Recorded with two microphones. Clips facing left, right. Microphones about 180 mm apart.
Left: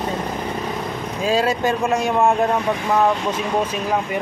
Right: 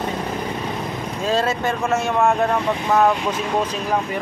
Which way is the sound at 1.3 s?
15° left (ahead or behind).